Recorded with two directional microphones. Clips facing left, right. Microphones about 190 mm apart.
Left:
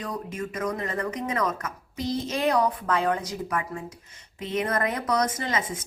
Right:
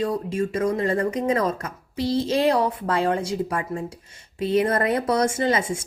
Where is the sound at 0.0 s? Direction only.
30° right (ahead or behind).